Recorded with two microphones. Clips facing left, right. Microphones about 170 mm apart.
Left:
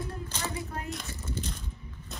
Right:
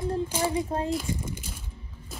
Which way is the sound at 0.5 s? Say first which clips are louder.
Right 9 dB; 30° right (ahead or behind).